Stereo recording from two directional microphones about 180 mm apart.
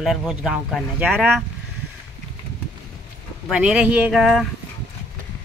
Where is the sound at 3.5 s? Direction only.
5° right (ahead or behind).